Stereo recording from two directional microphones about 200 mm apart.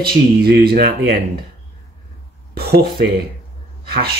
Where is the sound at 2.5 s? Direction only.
50° right (ahead or behind).